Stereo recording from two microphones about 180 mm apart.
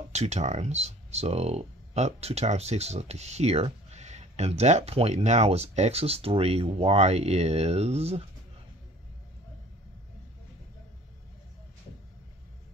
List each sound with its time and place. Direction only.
0.1 s speech: 40° right (ahead or behind)